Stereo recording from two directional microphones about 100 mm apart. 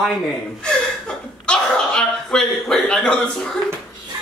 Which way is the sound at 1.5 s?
10° left (ahead or behind).